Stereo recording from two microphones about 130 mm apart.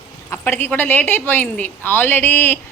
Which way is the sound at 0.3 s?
15° left (ahead or behind).